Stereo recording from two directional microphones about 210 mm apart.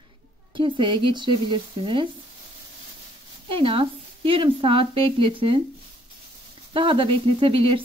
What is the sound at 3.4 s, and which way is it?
Speech, 25° right (ahead or behind).